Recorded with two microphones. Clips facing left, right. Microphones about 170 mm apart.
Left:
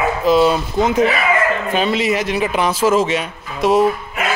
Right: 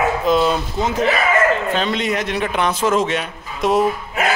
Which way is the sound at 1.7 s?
5° left (ahead or behind).